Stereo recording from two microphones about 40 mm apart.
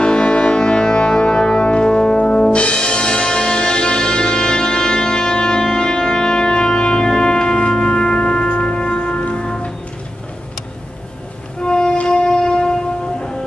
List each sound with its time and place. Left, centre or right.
0.0 s music: left
11.6 s music: centre